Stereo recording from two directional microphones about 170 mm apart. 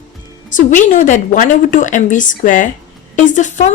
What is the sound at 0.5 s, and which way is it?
A woman's voice, 50° left (ahead or behind).